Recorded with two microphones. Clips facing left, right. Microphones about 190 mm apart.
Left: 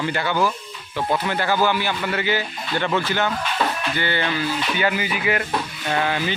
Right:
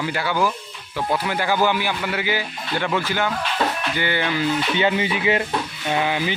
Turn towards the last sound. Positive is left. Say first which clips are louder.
# right 1 dB
turn(degrees=-15)  # may be behind; listen again after turning